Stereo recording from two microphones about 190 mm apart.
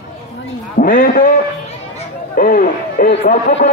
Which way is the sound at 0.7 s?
50° left (ahead or behind).